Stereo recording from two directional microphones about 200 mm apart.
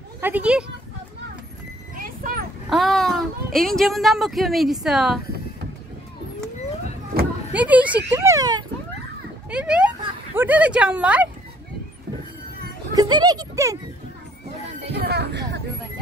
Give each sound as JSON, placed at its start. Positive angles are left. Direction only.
{"t": 0.2, "sound": "speech", "side_deg": -5}
{"t": 2.0, "sound": "a sound", "side_deg": -45}
{"t": 2.7, "sound": "speech", "side_deg": 0}
{"t": 7.5, "sound": "speech", "side_deg": -5}
{"t": 9.5, "sound": "speech", "side_deg": -5}
{"t": 12.9, "sound": "speech", "side_deg": -20}
{"t": 14.9, "sound": "a sound", "side_deg": -55}